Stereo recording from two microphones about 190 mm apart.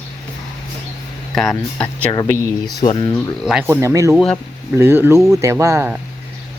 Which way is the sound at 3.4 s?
5° right (ahead or behind).